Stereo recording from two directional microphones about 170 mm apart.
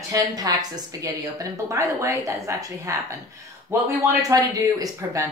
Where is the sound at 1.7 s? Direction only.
15° right (ahead or behind).